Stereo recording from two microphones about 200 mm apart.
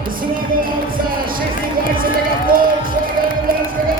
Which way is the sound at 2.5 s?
45° right (ahead or behind).